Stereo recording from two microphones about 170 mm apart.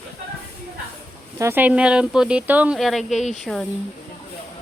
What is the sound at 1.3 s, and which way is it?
Speech, 15° right (ahead or behind).